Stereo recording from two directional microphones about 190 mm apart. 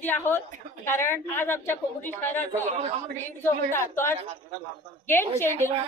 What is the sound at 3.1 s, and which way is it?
A woman's voice, 10° left (ahead or behind).